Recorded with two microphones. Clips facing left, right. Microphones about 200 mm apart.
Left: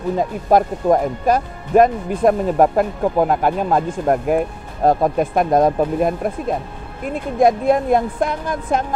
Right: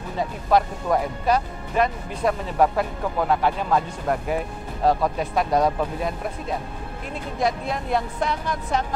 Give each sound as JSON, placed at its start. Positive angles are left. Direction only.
{"t": 0.5, "sound": "speech", "side_deg": 45}